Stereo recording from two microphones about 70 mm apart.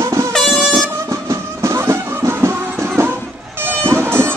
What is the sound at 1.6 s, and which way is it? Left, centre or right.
Music, right.